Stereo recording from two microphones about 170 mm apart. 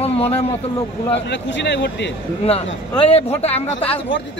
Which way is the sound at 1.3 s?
90° left.